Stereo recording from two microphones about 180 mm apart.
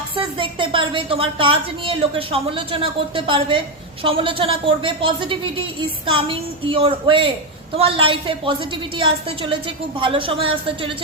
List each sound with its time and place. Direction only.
0.2 s a woman's voice: 30° right (ahead or behind)